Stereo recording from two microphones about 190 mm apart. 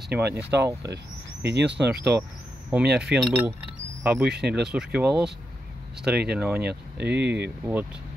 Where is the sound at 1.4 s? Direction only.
65° right (ahead or behind).